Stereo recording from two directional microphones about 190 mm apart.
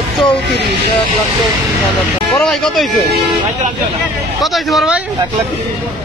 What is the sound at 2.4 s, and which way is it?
Speech, centre (ahead or behind).